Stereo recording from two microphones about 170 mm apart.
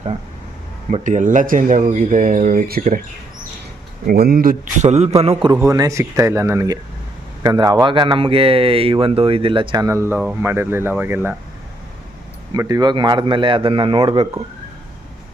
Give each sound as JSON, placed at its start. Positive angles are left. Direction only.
{"t": 0.9, "sound": "speech", "side_deg": -45}
{"t": 4.0, "sound": "speech", "side_deg": -60}
{"t": 5.5, "sound": "speech", "side_deg": -20}
{"t": 12.5, "sound": "a man's voice", "side_deg": -20}